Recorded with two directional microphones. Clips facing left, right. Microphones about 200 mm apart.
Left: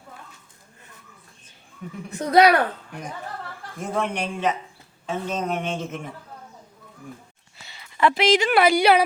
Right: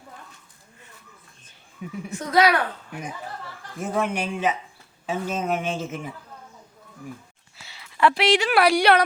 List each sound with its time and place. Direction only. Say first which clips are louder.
2.0 s speech: left 4 dB; 35° left (ahead or behind)
3.8 s a man's voice: right 1 dB; 5° right (ahead or behind)
7.5 s speech: even; centre (ahead or behind)